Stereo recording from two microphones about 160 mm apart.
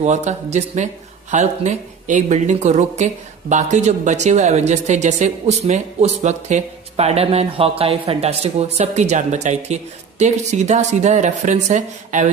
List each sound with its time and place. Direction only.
0.0 s a woman's voice: 45° right (ahead or behind)